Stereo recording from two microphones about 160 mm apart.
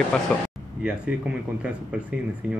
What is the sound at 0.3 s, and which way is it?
Speech, 5° left (ahead or behind).